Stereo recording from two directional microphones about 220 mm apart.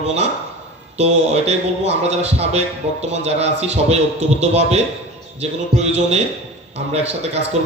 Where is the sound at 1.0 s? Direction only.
30° right (ahead or behind).